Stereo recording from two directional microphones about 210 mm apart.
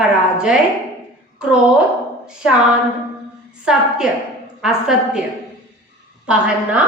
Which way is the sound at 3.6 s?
5° right (ahead or behind).